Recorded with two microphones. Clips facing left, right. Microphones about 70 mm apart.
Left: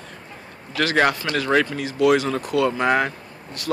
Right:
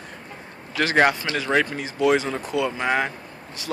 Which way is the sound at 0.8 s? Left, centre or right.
Centre.